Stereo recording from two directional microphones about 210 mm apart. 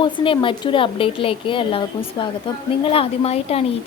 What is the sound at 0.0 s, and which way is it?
Speech, 25° left (ahead or behind).